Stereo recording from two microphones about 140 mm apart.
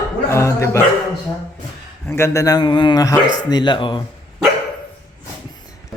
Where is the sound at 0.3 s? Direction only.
20° left (ahead or behind).